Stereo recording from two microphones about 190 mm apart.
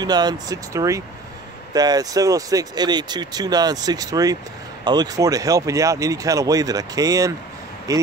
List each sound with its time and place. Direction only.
0.0 s speech: 20° right (ahead or behind)